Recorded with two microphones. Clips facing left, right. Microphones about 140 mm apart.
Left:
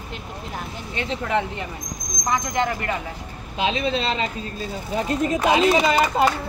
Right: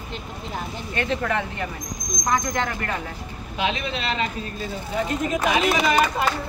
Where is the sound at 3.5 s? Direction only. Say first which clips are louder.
Left 3 dB; 30° left (ahead or behind).